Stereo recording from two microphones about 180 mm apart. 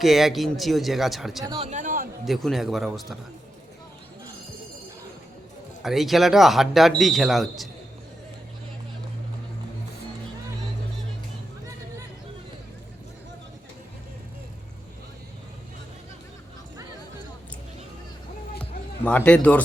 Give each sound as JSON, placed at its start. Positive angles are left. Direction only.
{"t": 0.0, "sound": "speech", "side_deg": 0}
{"t": 1.5, "sound": "a man's voice", "side_deg": -30}
{"t": 1.7, "sound": "a sound", "side_deg": -45}
{"t": 2.2, "sound": "speech", "side_deg": 0}
{"t": 5.8, "sound": "speech", "side_deg": 0}
{"t": 18.6, "sound": "a sound", "side_deg": 5}